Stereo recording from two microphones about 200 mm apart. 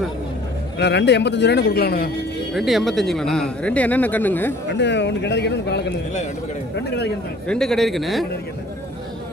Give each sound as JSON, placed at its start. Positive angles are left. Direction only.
{"t": 0.7, "sound": "a man's voice", "side_deg": 60}
{"t": 2.5, "sound": "speech", "side_deg": 0}
{"t": 4.7, "sound": "a man's voice", "side_deg": 60}
{"t": 7.4, "sound": "speech", "side_deg": 5}